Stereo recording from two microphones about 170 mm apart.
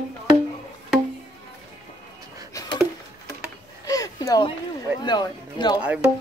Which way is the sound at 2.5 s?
20° left (ahead or behind).